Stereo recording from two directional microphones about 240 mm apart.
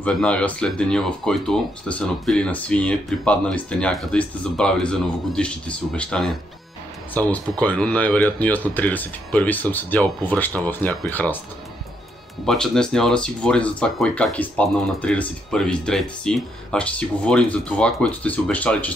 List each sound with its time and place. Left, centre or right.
0.0 s speech: centre
12.4 s speech: centre